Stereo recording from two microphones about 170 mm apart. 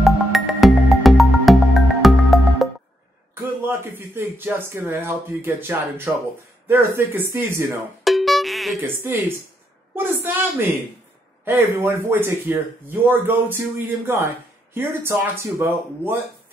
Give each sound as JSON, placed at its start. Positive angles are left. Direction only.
{"t": 0.0, "sound": "music", "side_deg": 0}
{"t": 3.6, "sound": "speech", "side_deg": -15}
{"t": 8.0, "sound": "cowbell", "side_deg": 0}
{"t": 8.8, "sound": "a woman's voice", "side_deg": -10}